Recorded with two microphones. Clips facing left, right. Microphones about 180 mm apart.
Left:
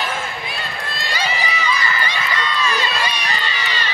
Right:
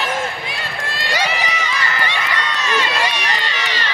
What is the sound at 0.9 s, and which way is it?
Run, 80° right.